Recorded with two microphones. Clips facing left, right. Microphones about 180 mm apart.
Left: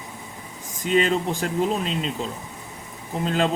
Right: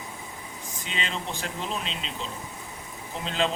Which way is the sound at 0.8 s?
45° left (ahead or behind).